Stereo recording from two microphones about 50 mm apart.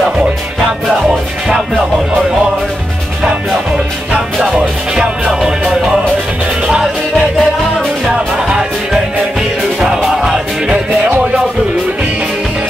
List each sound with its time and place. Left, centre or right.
0.8 s music: centre
4.6 s music: centre
8.5 s music: centre